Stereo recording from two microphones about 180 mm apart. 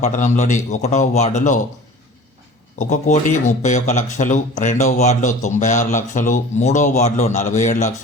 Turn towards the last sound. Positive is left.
turn(degrees=40)  # may be behind; listen again after turning